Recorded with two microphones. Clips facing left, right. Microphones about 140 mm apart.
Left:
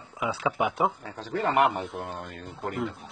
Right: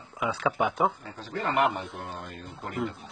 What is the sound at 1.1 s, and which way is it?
Speech, 70° left (ahead or behind).